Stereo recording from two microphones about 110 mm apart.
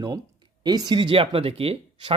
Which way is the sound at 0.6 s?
35° right (ahead or behind).